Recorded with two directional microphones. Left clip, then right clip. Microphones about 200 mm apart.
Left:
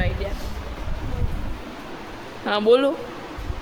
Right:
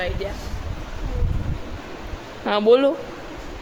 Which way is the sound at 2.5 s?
15° right (ahead or behind).